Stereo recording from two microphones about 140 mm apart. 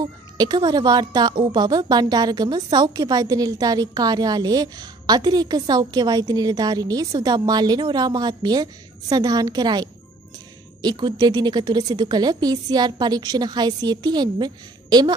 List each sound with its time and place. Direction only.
0.4 s a woman's voice: 30° right (ahead or behind)